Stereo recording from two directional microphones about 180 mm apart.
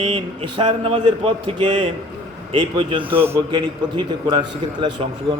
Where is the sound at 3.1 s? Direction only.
10° right (ahead or behind).